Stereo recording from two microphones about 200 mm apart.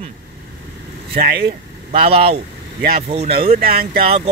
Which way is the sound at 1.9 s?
30° right (ahead or behind).